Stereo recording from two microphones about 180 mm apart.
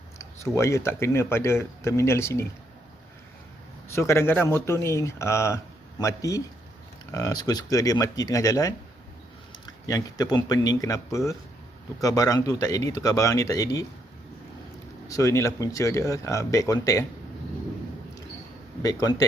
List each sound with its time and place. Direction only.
0.2 s speech: 15° left (ahead or behind)
3.8 s speech: 15° left (ahead or behind)
15.0 s speech: 15° left (ahead or behind)
18.8 s speech: 20° left (ahead or behind)